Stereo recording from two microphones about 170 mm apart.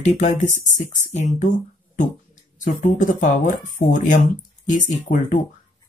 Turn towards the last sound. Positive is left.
turn(degrees=50)  # may be behind; listen again after turning